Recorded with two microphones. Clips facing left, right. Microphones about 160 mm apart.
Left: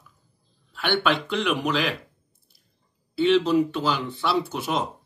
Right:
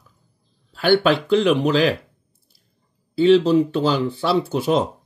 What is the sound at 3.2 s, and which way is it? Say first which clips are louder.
Speech: right 5 dB; 35° right (ahead or behind).